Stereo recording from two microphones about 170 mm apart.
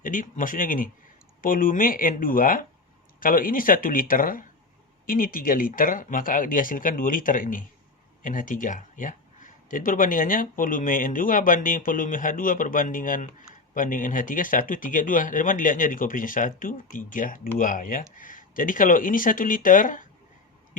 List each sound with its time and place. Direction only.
0.0 s speech: 50° left (ahead or behind)